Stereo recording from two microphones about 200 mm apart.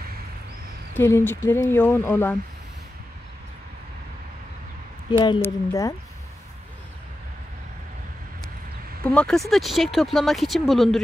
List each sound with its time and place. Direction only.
0.9 s speech: 10° left (ahead or behind)
5.4 s speech: 15° left (ahead or behind)
9.0 s speech: 5° left (ahead or behind)